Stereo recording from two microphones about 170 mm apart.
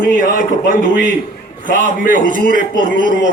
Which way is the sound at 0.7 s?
55° left (ahead or behind).